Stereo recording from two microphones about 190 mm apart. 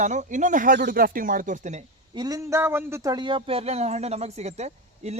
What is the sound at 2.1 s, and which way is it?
A man's voice, 20° right (ahead or behind).